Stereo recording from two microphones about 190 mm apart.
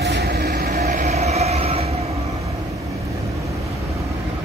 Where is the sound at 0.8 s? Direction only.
40° right (ahead or behind).